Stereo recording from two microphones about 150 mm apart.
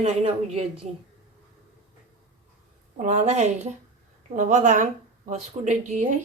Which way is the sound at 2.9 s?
50° right (ahead or behind).